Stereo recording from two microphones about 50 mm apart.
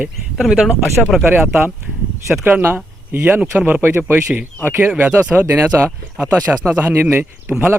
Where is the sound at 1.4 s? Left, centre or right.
Right.